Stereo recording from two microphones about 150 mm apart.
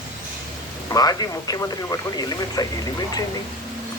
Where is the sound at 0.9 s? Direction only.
25° left (ahead or behind).